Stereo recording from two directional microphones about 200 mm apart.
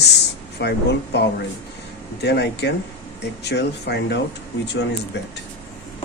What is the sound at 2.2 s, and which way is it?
Speech, 55° left (ahead or behind).